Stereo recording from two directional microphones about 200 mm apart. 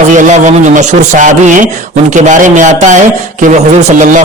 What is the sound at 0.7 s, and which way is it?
Speech, 40° right (ahead or behind).